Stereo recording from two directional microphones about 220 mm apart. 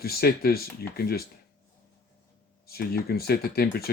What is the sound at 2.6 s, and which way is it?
Speech, 45° left (ahead or behind).